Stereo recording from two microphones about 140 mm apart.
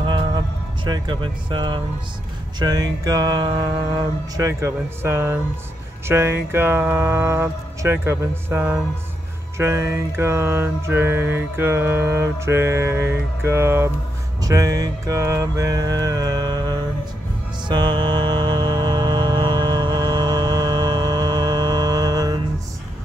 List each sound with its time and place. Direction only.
0.0 s music: 35° right (ahead or behind)
0.8 s speech: 35° right (ahead or behind)
2.6 s mantra: 25° right (ahead or behind)
17.6 s music: 35° right (ahead or behind)